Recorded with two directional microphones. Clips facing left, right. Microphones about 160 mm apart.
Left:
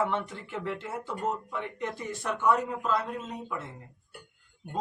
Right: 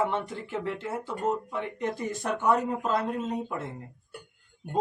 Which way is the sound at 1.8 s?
40° right (ahead or behind).